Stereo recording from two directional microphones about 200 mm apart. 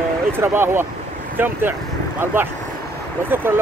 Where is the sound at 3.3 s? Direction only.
10° right (ahead or behind).